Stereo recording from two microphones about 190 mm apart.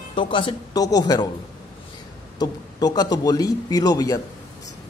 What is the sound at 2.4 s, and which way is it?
A man's voice, 20° left (ahead or behind).